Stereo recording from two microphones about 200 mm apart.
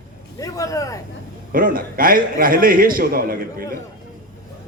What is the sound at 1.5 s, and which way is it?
A man's voice, 45° right (ahead or behind).